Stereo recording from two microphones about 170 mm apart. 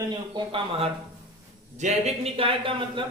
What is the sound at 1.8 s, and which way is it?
Speech, 40° right (ahead or behind).